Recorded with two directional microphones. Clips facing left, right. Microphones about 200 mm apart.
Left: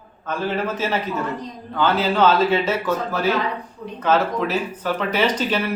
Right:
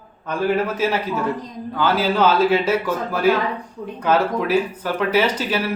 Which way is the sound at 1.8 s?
10° right (ahead or behind).